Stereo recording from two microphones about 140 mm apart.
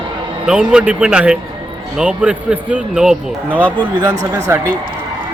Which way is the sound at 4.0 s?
25° right (ahead or behind).